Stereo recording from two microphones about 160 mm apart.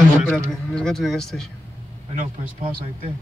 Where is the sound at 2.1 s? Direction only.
40° right (ahead or behind).